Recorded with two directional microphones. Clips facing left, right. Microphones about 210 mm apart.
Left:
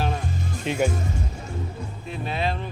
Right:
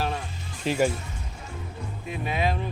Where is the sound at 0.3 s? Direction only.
45° left (ahead or behind).